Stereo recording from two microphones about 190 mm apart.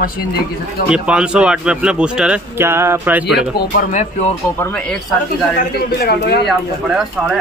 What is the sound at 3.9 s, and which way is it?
Speech, 35° left (ahead or behind).